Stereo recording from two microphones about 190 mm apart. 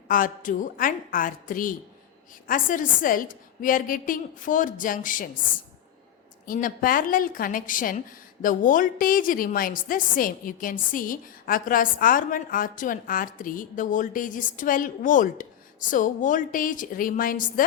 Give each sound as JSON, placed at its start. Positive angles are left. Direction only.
{"t": 0.1, "sound": "a woman's voice", "side_deg": 45}
{"t": 6.4, "sound": "a woman's voice", "side_deg": 45}